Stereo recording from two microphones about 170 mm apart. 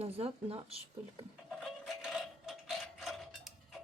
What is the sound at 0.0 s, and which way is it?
Speech, 35° right (ahead or behind).